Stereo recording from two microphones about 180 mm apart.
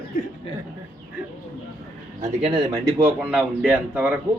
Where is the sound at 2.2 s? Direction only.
35° right (ahead or behind).